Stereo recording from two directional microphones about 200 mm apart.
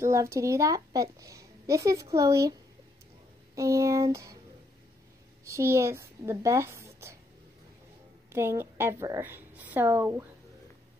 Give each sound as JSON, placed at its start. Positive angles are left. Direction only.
{"t": 0.0, "sound": "a woman's voice", "side_deg": -15}
{"t": 3.5, "sound": "a woman's voice", "side_deg": -15}
{"t": 5.4, "sound": "a woman's voice", "side_deg": -15}
{"t": 8.3, "sound": "a woman's voice", "side_deg": -10}